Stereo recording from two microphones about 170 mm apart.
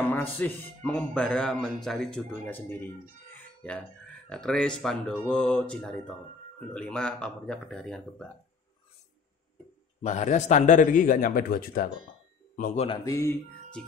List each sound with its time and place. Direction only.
0.1 s speech: 10° left (ahead or behind)
4.3 s speech: 5° left (ahead or behind)
10.0 s a man's voice: 45° left (ahead or behind)
12.8 s speech: 20° left (ahead or behind)